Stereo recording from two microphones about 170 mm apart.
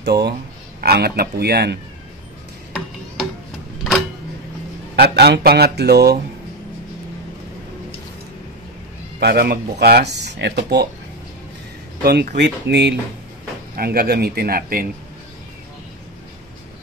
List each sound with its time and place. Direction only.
0.0 s speech: 75° right (ahead or behind)
4.9 s speech: 75° right (ahead or behind)
9.2 s speech: 70° right (ahead or behind)
12.0 s speech: 65° right (ahead or behind)
12.4 s speech: 85° right
13.7 s speech: 65° right (ahead or behind)